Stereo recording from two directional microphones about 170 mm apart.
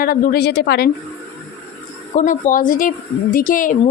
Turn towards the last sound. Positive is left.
turn(degrees=50)  # may be behind; listen again after turning